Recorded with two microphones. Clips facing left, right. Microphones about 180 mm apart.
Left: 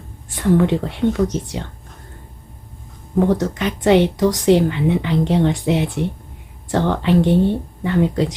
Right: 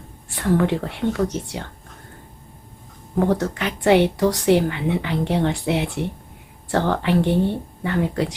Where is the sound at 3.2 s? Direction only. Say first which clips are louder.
Left 1 dB; 15° left (ahead or behind).